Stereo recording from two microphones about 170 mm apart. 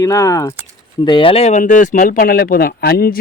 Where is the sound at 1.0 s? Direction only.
30° left (ahead or behind).